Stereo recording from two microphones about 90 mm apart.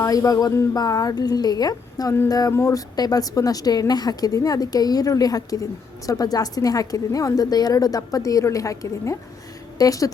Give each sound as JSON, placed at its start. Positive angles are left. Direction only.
{"t": 0.0, "sound": "a woman's voice", "side_deg": 40}